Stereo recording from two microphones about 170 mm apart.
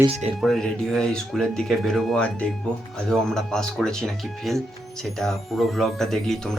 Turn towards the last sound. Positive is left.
turn(degrees=0)  # may be behind; listen again after turning